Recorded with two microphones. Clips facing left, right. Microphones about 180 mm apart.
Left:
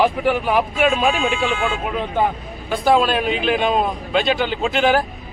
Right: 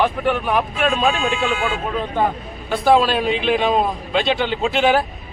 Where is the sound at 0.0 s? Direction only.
10° left (ahead or behind).